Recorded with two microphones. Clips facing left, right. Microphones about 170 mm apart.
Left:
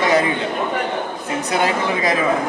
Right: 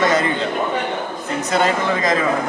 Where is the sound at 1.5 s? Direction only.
10° left (ahead or behind).